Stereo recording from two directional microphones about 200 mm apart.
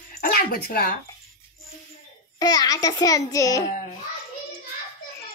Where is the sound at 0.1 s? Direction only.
45° left (ahead or behind).